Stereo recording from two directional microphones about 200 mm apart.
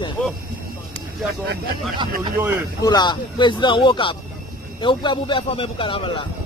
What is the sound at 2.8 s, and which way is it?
Speech, 20° left (ahead or behind).